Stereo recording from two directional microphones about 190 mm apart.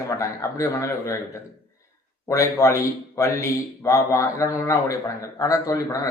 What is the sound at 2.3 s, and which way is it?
A man's voice, 15° left (ahead or behind).